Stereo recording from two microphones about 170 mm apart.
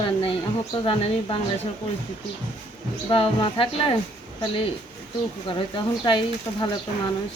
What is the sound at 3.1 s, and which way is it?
Speech, 30° left (ahead or behind).